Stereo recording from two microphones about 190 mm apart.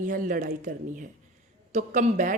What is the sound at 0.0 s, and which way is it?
A woman's voice, 45° right (ahead or behind).